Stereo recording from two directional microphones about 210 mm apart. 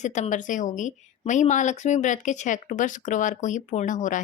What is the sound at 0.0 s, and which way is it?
Speech, 35° left (ahead or behind).